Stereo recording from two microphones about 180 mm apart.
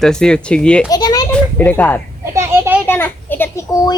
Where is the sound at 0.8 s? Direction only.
20° left (ahead or behind).